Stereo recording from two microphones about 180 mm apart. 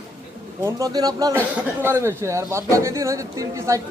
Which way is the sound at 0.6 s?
20° right (ahead or behind).